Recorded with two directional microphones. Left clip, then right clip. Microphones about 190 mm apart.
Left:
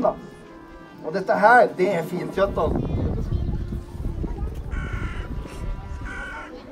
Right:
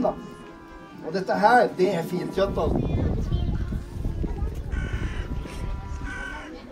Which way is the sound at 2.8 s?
25° right (ahead or behind).